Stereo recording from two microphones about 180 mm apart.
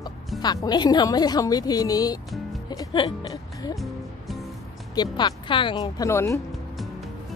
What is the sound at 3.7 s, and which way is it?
Music, centre (ahead or behind).